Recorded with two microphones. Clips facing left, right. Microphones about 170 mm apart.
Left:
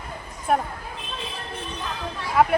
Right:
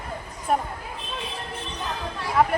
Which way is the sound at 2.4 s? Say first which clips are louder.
Left 2 dB; 5° left (ahead or behind).